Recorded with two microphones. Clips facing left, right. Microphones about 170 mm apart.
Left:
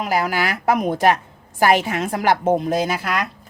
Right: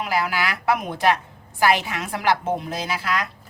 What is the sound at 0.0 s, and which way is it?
A woman's voice, 45° left (ahead or behind).